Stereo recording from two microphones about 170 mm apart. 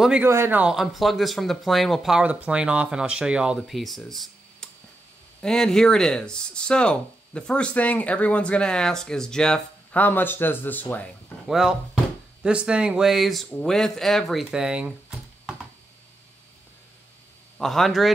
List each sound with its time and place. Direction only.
0.0 s speech: 10° right (ahead or behind); by 11.1 s 10° left (ahead or behind)
11.4 s speech: 5° right (ahead or behind)
17.6 s speech: centre (ahead or behind)